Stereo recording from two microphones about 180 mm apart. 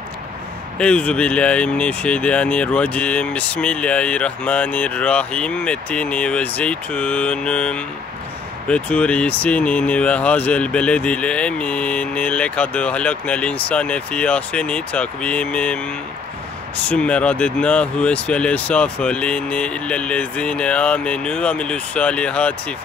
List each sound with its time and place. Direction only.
0.7 s speech: 5° left (ahead or behind)